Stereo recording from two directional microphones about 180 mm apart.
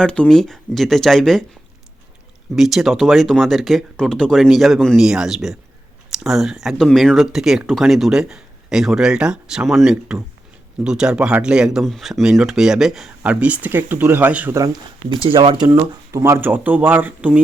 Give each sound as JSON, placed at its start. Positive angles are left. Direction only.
{"t": 0.0, "sound": "speech", "side_deg": 5}
{"t": 2.6, "sound": "speech", "side_deg": 0}
{"t": 15.1, "sound": "speech", "side_deg": -30}